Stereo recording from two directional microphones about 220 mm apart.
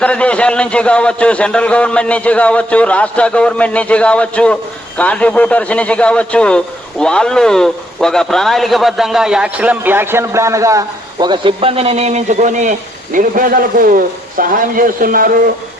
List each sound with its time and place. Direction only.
0.0 s a man's voice: 5° left (ahead or behind); by 15.5 s 40° right (ahead or behind)